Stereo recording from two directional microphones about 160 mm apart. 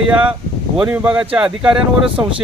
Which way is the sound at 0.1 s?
5° right (ahead or behind).